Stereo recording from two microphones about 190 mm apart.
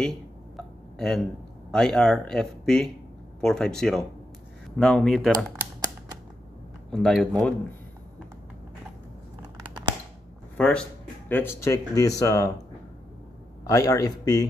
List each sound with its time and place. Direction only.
0.9 s speech: 5° left (ahead or behind)
6.9 s speech: centre (ahead or behind)
10.6 s speech: 5° left (ahead or behind)
13.7 s a man's voice: 20° left (ahead or behind)